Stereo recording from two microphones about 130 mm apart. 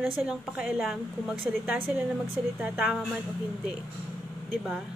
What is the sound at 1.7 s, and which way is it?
Speech, 15° right (ahead or behind).